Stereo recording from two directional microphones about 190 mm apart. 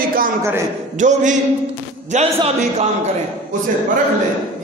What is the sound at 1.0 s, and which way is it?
A man's voice, 40° right (ahead or behind).